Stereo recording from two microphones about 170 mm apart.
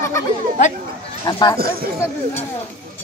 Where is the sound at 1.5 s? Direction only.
60° right (ahead or behind).